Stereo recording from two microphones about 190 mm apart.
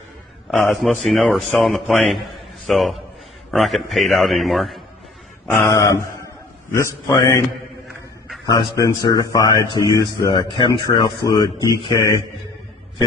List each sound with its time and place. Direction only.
0.5 s a man's voice: centre (ahead or behind)
5.5 s a sound: 15° left (ahead or behind)
7.1 s a man's voice: 20° left (ahead or behind)
8.5 s a man's voice: 20° left (ahead or behind)